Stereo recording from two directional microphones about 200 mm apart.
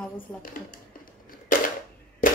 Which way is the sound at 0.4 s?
45° left (ahead or behind).